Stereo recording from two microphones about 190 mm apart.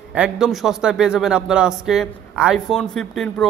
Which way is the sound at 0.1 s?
5° right (ahead or behind).